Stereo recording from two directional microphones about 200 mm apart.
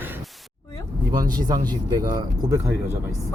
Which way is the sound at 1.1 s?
20° right (ahead or behind).